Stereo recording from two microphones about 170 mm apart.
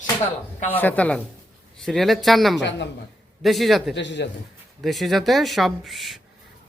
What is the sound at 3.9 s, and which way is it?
Speech, 90° left.